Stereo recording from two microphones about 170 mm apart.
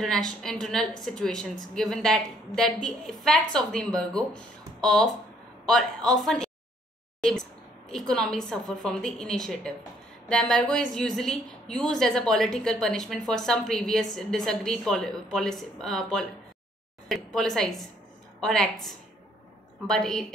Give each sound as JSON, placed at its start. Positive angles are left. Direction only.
{"t": 0.0, "sound": "a woman's voice", "side_deg": 5}
{"t": 19.9, "sound": "a woman's voice", "side_deg": 5}